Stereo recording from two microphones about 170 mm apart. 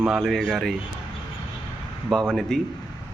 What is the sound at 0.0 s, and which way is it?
Speech, centre (ahead or behind).